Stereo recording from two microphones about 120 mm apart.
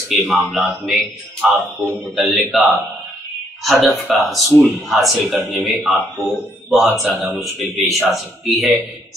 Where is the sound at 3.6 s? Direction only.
Centre (ahead or behind).